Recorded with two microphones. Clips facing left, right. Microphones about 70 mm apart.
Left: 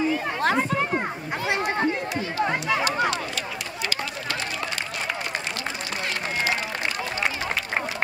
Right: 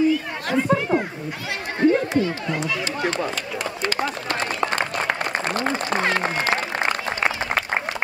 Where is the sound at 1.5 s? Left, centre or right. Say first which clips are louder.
Right 5 dB; left.